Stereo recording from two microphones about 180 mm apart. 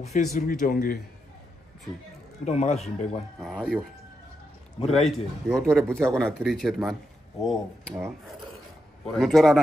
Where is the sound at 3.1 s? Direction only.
Centre (ahead or behind).